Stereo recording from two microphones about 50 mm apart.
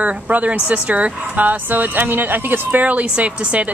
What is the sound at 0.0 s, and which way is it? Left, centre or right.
Speech, right.